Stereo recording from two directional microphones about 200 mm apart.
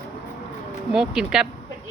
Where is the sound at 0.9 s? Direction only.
5° right (ahead or behind).